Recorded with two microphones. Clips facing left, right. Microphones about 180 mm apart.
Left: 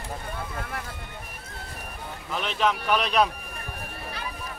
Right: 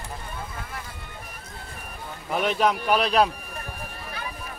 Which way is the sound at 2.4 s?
45° right (ahead or behind).